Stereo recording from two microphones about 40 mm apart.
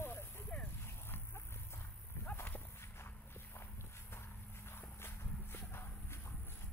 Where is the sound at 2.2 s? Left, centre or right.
Left.